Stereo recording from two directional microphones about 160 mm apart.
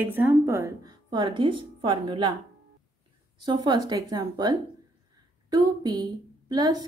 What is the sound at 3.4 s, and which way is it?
A woman's voice, 25° right (ahead or behind).